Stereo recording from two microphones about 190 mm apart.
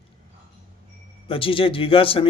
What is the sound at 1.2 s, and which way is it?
A man's voice, 30° left (ahead or behind).